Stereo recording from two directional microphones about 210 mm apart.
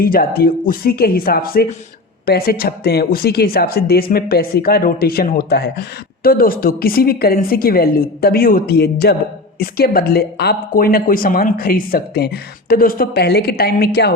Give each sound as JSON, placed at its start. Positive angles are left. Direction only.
{"t": 0.0, "sound": "speech", "side_deg": 45}